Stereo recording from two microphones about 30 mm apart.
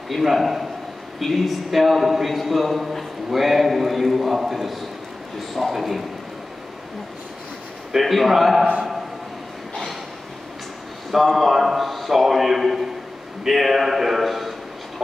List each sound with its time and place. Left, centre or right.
0.2 s a man's voice: centre
7.9 s a man's voice: centre
11.1 s a man's voice: centre